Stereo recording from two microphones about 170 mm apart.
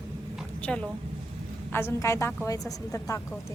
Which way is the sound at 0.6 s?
5° left (ahead or behind).